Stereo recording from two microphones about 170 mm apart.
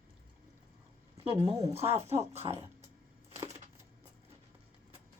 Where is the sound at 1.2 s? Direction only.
35° right (ahead or behind).